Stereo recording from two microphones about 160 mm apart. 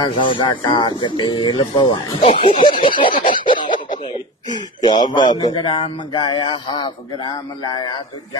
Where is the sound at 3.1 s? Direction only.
60° left (ahead or behind).